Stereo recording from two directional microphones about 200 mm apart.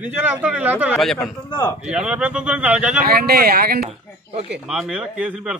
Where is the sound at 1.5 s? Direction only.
20° left (ahead or behind).